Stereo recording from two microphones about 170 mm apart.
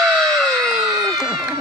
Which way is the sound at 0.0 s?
Centre (ahead or behind).